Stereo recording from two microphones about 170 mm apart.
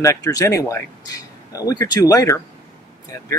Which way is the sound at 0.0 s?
20° left (ahead or behind).